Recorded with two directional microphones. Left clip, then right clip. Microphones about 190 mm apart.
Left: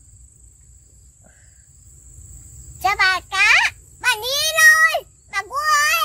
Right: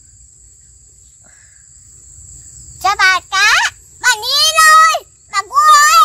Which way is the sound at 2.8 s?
5° left (ahead or behind).